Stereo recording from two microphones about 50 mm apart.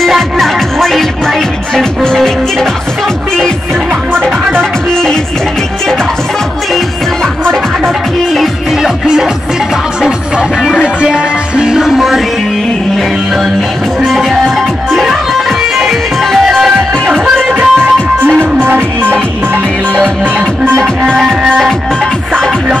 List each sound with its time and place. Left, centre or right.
0.1 s music: centre
8.4 s music: centre
10.8 s music: centre
14.0 s music: centre
17.6 s music: right